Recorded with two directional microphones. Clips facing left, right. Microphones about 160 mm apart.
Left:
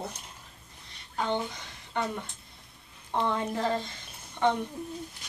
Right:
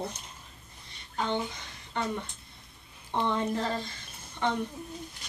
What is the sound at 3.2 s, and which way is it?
Speech, 10° left (ahead or behind).